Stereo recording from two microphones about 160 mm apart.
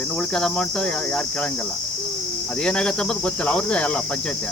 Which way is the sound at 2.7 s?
5° left (ahead or behind).